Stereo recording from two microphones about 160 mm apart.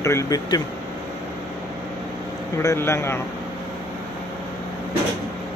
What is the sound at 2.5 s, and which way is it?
Speech, 15° left (ahead or behind).